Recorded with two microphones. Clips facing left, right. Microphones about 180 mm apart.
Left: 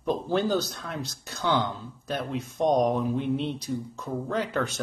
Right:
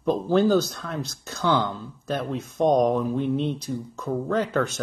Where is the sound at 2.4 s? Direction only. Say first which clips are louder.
Right 3 dB; 45° right (ahead or behind).